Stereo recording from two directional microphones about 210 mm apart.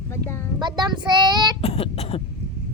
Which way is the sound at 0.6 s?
20° right (ahead or behind).